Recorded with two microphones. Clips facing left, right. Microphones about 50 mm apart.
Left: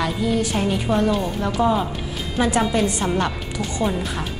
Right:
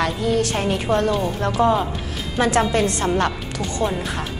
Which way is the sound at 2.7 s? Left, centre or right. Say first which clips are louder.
Right 1 dB; right.